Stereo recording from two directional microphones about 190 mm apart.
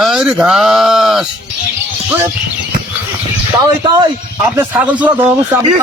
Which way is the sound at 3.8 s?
20° right (ahead or behind).